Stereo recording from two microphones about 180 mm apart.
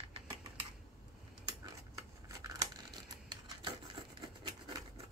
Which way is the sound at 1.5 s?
20° right (ahead or behind).